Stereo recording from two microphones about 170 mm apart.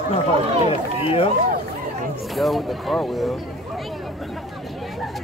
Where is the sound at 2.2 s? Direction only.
Centre (ahead or behind).